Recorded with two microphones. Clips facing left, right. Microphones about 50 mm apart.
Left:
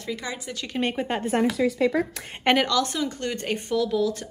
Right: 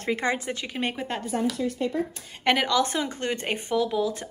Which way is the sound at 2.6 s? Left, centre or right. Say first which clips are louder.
Even; right.